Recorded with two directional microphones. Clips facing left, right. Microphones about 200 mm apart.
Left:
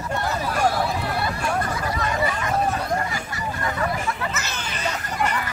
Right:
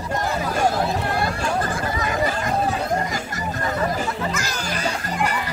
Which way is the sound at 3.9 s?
30° right (ahead or behind).